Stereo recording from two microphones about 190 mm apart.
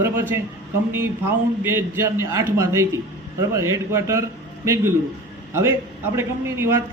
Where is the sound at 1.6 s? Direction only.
15° right (ahead or behind).